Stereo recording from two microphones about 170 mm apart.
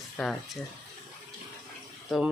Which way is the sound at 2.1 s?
Centre (ahead or behind).